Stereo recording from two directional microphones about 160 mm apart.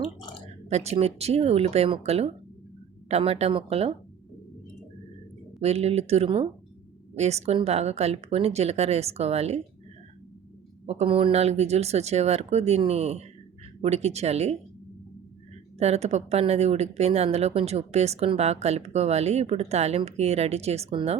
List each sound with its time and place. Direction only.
0.7 s speech: 40° right (ahead or behind)
5.5 s speech: 40° right (ahead or behind)
10.8 s speech: 40° right (ahead or behind)
15.8 s speech: 45° right (ahead or behind)